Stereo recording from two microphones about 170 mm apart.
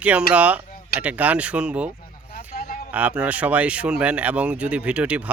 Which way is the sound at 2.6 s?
55° left (ahead or behind).